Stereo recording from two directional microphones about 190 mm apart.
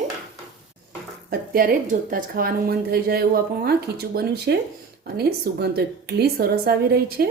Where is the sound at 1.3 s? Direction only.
50° right (ahead or behind).